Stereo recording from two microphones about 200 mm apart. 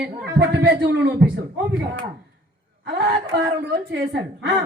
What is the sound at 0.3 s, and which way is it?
Speech, 60° right (ahead or behind).